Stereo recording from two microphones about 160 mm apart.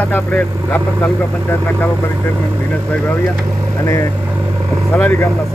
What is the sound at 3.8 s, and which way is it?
Speech, 20° left (ahead or behind).